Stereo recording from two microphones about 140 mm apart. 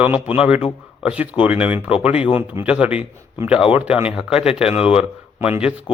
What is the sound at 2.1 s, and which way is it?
Speech, 45° left (ahead or behind).